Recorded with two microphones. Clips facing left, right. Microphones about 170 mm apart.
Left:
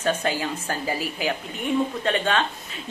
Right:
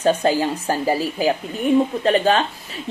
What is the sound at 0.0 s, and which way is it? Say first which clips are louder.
Speech: right 7 dB; 35° right (ahead or behind).